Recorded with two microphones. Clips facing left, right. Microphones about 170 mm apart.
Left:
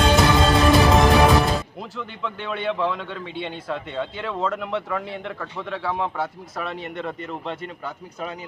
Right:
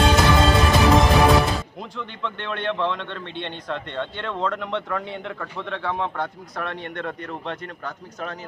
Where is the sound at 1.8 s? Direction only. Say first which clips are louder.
Even; 5° left (ahead or behind).